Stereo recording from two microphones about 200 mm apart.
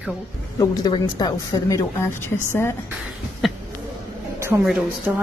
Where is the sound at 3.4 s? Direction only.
Centre (ahead or behind).